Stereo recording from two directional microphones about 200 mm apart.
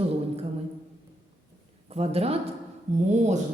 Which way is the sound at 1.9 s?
30° right (ahead or behind).